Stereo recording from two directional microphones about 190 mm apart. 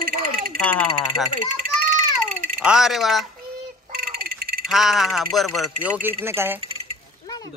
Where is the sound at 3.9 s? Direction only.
55° right (ahead or behind).